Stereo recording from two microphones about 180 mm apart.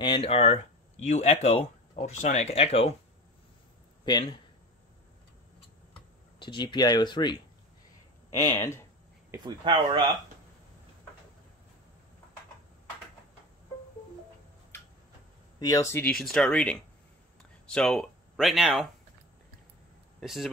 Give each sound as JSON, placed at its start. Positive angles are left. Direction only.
{"t": 0.0, "sound": "speech", "side_deg": 30}
{"t": 4.0, "sound": "speech", "side_deg": 25}
{"t": 6.4, "sound": "speech", "side_deg": 25}
{"t": 9.3, "sound": "speech", "side_deg": -25}
{"t": 15.6, "sound": "speech", "side_deg": 20}
{"t": 16.2, "sound": "speech", "side_deg": 0}
{"t": 20.2, "sound": "speech", "side_deg": 0}